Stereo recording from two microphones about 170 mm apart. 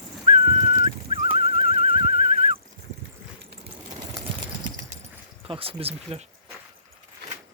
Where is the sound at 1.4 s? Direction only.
40° right (ahead or behind).